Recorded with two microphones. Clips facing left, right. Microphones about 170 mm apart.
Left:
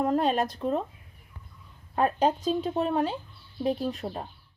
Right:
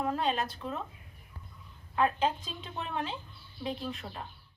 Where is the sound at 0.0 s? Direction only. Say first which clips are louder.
Left 6 dB; 40° left (ahead or behind).